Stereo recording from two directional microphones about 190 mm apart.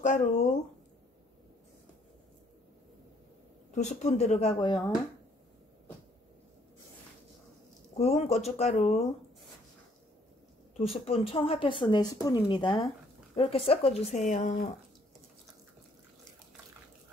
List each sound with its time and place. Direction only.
0.0 s speech: 40° left (ahead or behind)
3.7 s speech: 40° left (ahead or behind)
8.0 s speech: 35° left (ahead or behind)
10.8 s speech: 30° left (ahead or behind)